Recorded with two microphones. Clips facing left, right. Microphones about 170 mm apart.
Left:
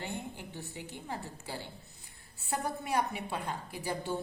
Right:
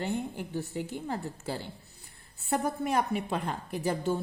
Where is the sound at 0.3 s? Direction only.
45° right (ahead or behind).